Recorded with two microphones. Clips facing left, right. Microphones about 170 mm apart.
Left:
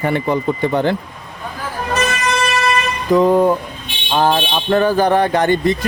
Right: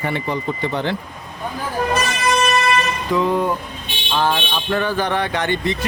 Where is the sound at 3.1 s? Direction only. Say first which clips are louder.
Left 7 dB; 40° left (ahead or behind).